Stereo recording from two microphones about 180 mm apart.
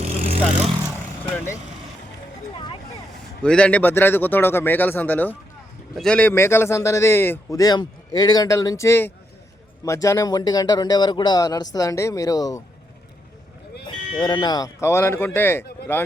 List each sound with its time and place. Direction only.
0.0 s vehicle: 35° right (ahead or behind)
1.2 s speech: 10° left (ahead or behind)
3.4 s a man's voice: 5° left (ahead or behind)
14.2 s a man's voice: 25° left (ahead or behind)